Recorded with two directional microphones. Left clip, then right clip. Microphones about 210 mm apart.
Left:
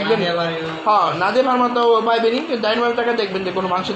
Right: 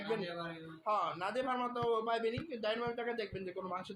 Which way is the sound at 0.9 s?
10° right (ahead or behind).